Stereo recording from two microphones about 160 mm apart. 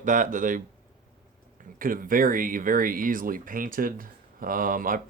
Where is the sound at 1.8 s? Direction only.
60° right (ahead or behind).